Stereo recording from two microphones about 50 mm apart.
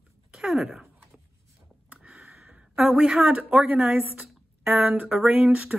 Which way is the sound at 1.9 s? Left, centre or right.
Right.